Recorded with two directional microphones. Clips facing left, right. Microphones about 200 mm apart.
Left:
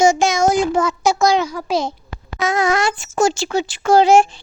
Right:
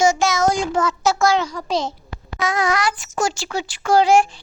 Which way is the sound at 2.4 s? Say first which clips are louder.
Left 3 dB; 25° left (ahead or behind).